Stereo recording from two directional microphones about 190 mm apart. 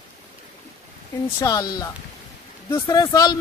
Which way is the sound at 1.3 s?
20° left (ahead or behind).